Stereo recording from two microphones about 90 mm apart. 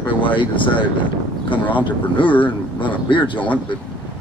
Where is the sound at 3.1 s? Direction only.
65° left (ahead or behind).